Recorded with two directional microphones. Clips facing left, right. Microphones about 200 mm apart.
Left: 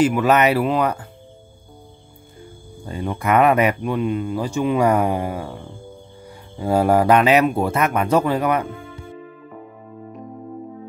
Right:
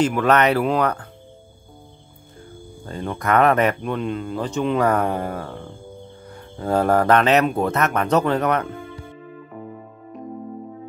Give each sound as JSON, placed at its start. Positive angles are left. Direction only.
{"t": 0.0, "sound": "speech", "side_deg": 5}
{"t": 2.8, "sound": "speech", "side_deg": 10}